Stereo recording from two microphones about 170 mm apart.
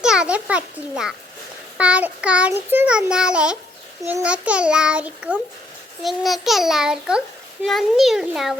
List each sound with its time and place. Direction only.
0.0 s a child's voice: 5° right (ahead or behind)